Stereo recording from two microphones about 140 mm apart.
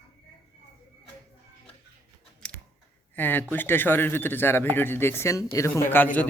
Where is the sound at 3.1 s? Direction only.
15° left (ahead or behind).